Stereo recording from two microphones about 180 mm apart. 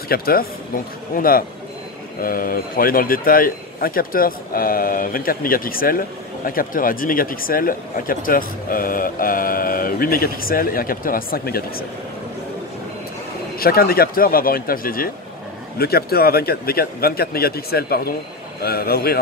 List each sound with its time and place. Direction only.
0.1 s speech: 55° left (ahead or behind)
13.6 s speech: 55° left (ahead or behind)